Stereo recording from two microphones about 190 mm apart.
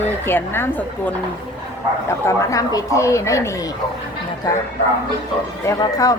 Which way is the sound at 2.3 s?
15° left (ahead or behind).